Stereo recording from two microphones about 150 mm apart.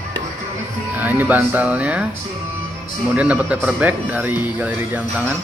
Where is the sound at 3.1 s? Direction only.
10° right (ahead or behind).